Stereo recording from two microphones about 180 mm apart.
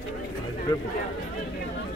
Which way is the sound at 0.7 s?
20° left (ahead or behind).